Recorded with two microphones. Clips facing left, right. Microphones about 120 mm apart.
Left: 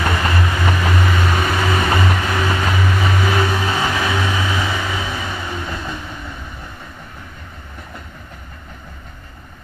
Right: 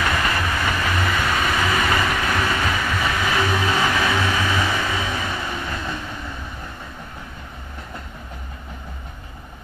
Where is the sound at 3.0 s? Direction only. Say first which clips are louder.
Left 2 dB; 5° left (ahead or behind).